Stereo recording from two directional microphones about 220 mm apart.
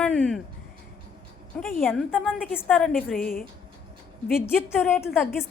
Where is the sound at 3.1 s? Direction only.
40° left (ahead or behind).